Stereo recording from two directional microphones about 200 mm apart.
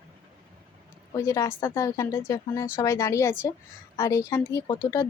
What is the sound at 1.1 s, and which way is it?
Speech, 15° left (ahead or behind).